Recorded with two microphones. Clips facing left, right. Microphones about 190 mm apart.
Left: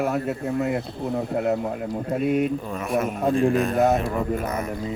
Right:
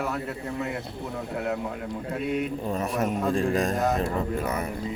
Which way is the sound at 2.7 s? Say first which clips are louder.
Left 2 dB; 35° right (ahead or behind).